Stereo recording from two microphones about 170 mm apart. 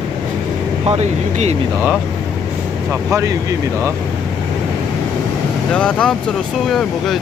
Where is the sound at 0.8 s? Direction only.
40° right (ahead or behind).